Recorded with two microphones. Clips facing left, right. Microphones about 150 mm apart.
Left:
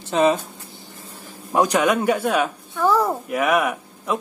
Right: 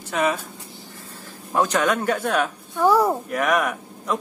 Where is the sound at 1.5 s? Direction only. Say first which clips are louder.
Left 3 dB; 15° left (ahead or behind).